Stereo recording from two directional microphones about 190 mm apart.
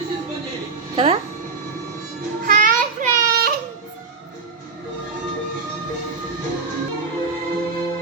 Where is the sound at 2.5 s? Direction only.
45° right (ahead or behind).